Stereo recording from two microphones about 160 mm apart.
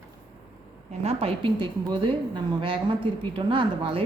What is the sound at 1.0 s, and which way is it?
Speech, 40° right (ahead or behind).